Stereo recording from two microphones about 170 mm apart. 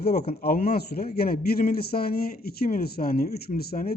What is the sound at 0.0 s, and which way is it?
A man's voice, 65° left (ahead or behind).